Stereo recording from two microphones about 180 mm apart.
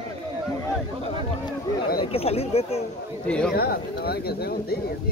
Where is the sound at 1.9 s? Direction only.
35° left (ahead or behind).